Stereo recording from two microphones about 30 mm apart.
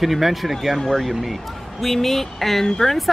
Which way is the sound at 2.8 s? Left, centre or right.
Left.